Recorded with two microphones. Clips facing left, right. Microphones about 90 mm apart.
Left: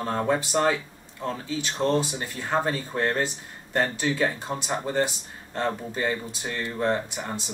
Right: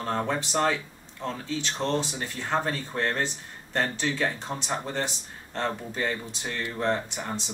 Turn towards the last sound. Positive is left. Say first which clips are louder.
# left 1 dB
turn(degrees=10)  # may be behind; listen again after turning